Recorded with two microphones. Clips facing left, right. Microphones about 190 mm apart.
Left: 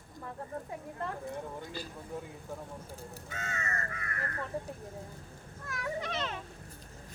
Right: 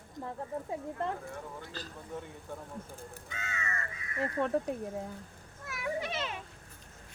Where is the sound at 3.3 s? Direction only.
45° left (ahead or behind).